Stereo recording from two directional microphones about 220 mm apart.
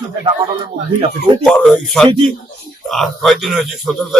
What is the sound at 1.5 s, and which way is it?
A man's voice, 5° left (ahead or behind).